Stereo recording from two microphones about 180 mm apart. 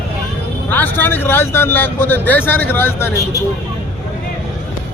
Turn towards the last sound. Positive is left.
turn(degrees=15)  # may be behind; listen again after turning